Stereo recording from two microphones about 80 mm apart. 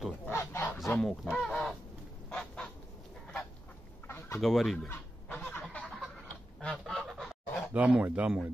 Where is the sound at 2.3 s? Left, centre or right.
Centre.